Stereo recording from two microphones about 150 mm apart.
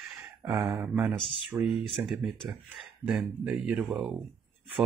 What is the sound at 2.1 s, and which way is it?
Speech, centre (ahead or behind).